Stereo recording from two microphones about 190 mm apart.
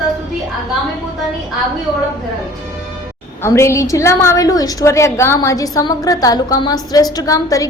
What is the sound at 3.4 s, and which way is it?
A woman's voice, 15° left (ahead or behind).